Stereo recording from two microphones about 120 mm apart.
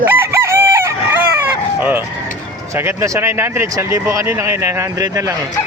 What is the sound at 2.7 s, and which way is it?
Speech, 25° right (ahead or behind).